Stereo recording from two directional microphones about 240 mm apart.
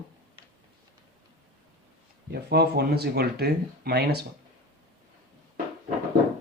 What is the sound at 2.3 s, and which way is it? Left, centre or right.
Speech, right.